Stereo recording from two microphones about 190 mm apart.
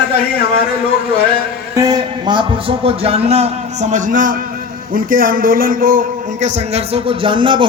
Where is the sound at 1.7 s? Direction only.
20° right (ahead or behind).